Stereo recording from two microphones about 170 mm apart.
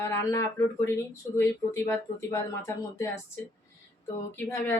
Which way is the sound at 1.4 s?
15° left (ahead or behind).